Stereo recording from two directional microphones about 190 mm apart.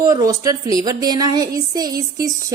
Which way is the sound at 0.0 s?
15° right (ahead or behind).